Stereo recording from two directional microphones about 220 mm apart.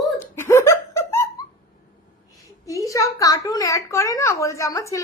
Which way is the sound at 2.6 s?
15° left (ahead or behind).